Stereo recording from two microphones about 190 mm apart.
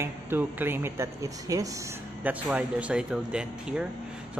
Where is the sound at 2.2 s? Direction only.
5° right (ahead or behind).